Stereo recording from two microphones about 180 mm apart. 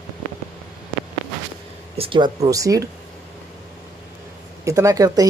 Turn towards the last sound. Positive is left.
turn(degrees=-20)  # may be behind; listen again after turning